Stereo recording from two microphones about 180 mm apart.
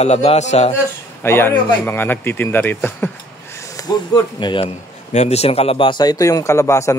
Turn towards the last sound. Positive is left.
turn(degrees=15)  # may be behind; listen again after turning